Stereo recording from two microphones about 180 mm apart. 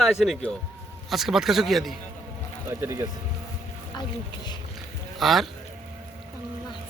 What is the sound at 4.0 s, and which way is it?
Speech, 25° left (ahead or behind).